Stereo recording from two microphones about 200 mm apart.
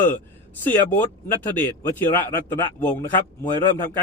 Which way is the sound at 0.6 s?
10° left (ahead or behind).